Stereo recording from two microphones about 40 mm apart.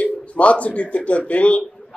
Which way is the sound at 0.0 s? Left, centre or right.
Left.